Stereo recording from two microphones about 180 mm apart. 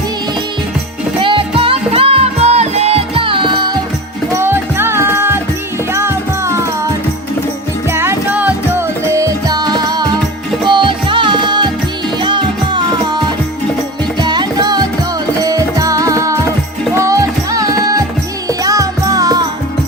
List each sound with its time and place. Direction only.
1.2 s music: 30° right (ahead or behind)
4.4 s music: 15° right (ahead or behind)
7.9 s music: 15° right (ahead or behind)